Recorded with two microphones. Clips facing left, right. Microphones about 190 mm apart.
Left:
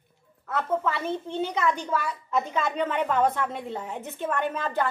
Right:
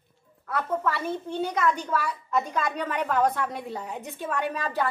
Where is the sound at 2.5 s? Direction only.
5° left (ahead or behind).